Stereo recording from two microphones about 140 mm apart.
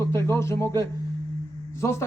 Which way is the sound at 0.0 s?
20° left (ahead or behind).